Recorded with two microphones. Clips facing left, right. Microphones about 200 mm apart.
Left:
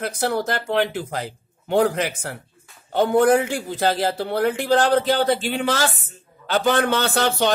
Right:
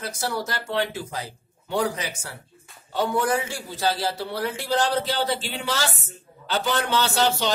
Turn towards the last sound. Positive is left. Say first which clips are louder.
# left 3 dB
turn(degrees=55)  # may be behind; listen again after turning